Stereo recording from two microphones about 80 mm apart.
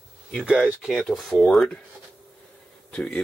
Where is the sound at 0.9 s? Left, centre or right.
Centre.